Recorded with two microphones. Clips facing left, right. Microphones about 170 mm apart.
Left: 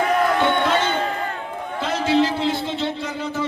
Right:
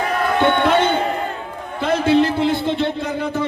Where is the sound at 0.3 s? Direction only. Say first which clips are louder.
Right 4 dB; 60° right (ahead or behind).